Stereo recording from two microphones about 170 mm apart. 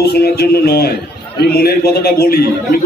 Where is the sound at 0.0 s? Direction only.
70° left (ahead or behind).